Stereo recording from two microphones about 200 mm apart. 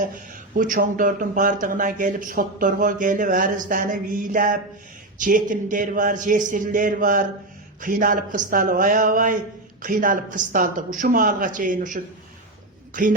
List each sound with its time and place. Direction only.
0.5 s a man's voice: 40° right (ahead or behind)